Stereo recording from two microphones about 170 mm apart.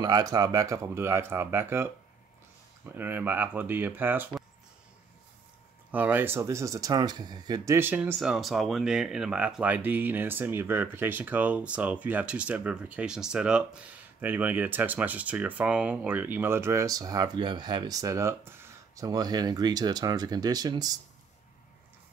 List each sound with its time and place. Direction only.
0.0 s speech: 25° right (ahead or behind)
5.9 s speech: 10° right (ahead or behind)